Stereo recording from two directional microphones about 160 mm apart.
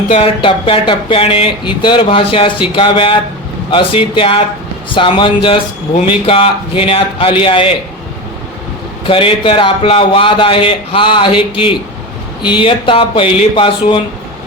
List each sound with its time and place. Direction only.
0.1 s speech: 35° left (ahead or behind)
9.0 s speech: 35° left (ahead or behind)